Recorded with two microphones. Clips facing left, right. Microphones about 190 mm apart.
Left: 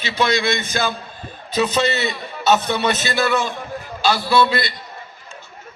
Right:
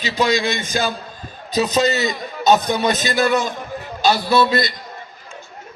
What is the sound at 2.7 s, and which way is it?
Speech, 15° right (ahead or behind).